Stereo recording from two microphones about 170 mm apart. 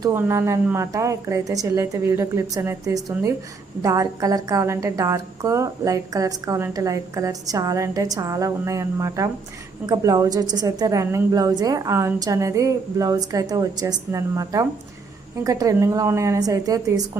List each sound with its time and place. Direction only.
0.0 s a woman's voice: 15° right (ahead or behind)